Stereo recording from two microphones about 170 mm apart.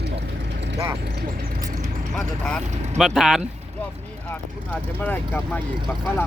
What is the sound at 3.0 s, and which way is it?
Speech, centre (ahead or behind).